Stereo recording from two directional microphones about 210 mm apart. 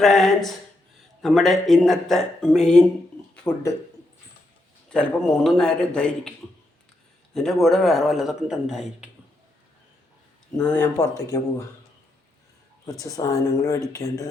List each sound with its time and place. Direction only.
0.0 s a man's voice: centre (ahead or behind)
4.9 s a man's voice: 5° left (ahead or behind)
7.3 s a man's voice: centre (ahead or behind)
10.6 s speech: 10° left (ahead or behind)
12.8 s speech: 15° left (ahead or behind)